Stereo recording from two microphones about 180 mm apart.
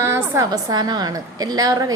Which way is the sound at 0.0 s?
15° right (ahead or behind).